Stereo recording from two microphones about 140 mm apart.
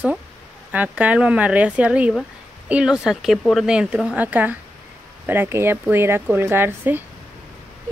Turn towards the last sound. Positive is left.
turn(degrees=-15)  # may be behind; listen again after turning